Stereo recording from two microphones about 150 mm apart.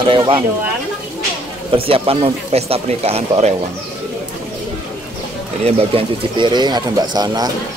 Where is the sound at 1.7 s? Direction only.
40° right (ahead or behind).